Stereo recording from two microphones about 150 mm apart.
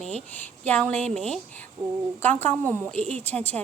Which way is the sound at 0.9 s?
50° right (ahead or behind).